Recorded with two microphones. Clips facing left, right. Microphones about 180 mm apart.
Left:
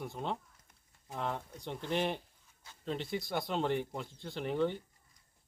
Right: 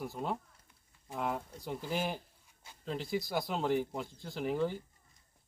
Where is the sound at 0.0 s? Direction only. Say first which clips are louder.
Right 1 dB; 5° right (ahead or behind).